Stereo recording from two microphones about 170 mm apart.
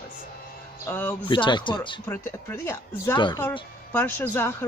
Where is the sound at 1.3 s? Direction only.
30° left (ahead or behind).